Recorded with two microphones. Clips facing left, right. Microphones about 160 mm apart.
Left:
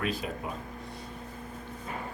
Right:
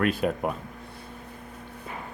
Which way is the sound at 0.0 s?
60° right (ahead or behind).